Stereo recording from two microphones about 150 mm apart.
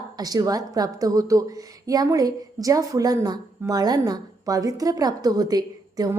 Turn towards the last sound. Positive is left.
turn(degrees=-25)  # may be behind; listen again after turning